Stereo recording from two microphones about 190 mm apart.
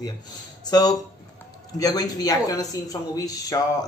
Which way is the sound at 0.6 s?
20° left (ahead or behind).